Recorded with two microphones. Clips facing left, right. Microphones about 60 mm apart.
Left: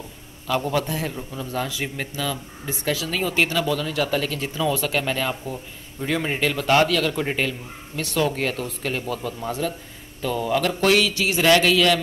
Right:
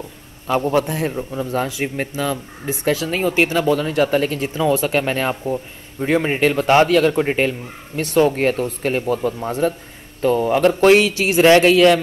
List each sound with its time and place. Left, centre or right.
0.5 s speech: right